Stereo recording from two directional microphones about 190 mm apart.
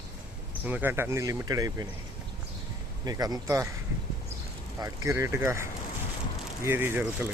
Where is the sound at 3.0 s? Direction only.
20° right (ahead or behind).